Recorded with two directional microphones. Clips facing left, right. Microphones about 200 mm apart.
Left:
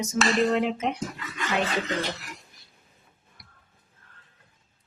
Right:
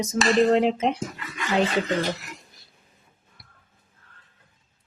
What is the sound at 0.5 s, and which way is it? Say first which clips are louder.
Speech: right 5 dB; 30° right (ahead or behind).